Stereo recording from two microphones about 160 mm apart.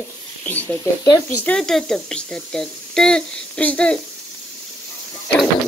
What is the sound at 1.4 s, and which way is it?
Speech, 5° left (ahead or behind).